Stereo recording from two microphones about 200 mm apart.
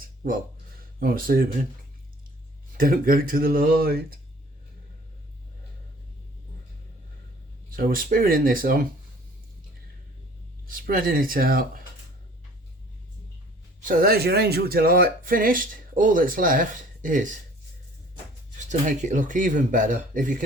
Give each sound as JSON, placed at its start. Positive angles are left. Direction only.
{"t": 0.9, "sound": "speech", "side_deg": -45}
{"t": 2.7, "sound": "speech", "side_deg": -45}
{"t": 7.8, "sound": "speech", "side_deg": -45}
{"t": 10.7, "sound": "speech", "side_deg": -45}
{"t": 13.8, "sound": "speech", "side_deg": -45}
{"t": 18.7, "sound": "speech", "side_deg": -40}